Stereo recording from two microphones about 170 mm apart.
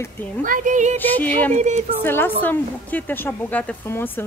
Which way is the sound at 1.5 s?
45° right (ahead or behind).